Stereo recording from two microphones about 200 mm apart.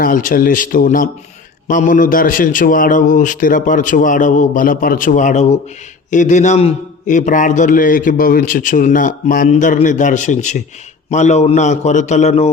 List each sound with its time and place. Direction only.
0.0 s a man's voice: 40° left (ahead or behind)